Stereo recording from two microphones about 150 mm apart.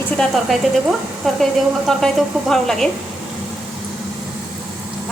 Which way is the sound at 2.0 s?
Centre (ahead or behind).